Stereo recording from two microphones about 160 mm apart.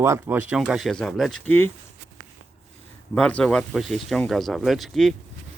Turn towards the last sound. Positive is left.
turn(degrees=0)  # may be behind; listen again after turning